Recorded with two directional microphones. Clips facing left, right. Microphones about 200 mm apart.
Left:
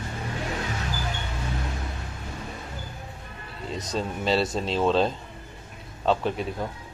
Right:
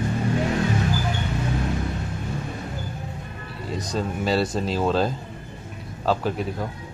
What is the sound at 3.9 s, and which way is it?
Speech, centre (ahead or behind).